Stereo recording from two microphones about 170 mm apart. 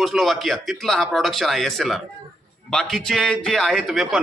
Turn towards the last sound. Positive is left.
turn(degrees=0)  # may be behind; listen again after turning